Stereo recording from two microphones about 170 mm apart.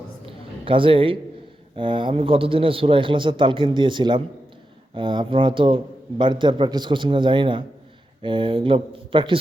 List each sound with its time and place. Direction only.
0.6 s a man's voice: 30° right (ahead or behind)